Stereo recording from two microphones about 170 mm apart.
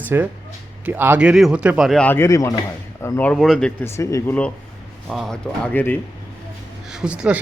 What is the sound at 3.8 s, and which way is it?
Speech, 15° left (ahead or behind).